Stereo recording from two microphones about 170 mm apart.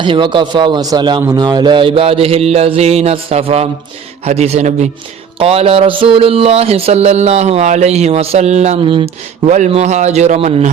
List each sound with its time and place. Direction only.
0.0 s speech: 30° right (ahead or behind)